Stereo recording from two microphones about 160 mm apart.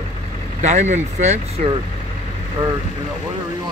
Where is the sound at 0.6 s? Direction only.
45° right (ahead or behind).